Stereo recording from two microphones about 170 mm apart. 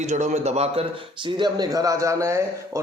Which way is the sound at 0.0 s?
45° right (ahead or behind).